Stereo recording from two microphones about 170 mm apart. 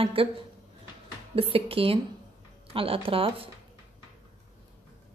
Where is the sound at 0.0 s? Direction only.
30° right (ahead or behind).